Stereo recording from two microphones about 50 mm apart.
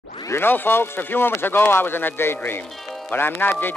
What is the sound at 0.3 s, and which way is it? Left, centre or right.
Speech, left.